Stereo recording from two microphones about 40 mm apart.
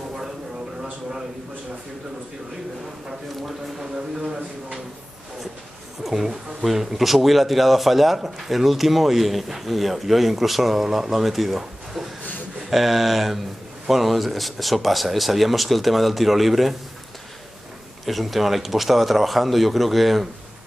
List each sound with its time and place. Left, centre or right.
6.0 s speech: centre
12.2 s a sound: left
12.6 s speech: centre
18.0 s speech: centre